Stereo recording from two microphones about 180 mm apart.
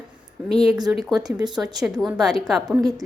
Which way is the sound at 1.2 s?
20° right (ahead or behind).